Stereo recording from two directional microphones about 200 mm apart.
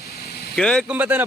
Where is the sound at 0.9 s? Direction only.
10° right (ahead or behind).